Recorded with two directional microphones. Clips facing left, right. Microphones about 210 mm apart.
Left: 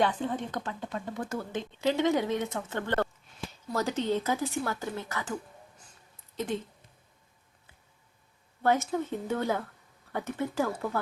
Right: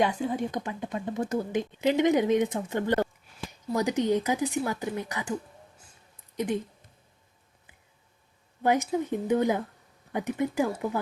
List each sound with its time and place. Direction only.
0.0 s speech: 10° right (ahead or behind)
8.6 s speech: 15° right (ahead or behind)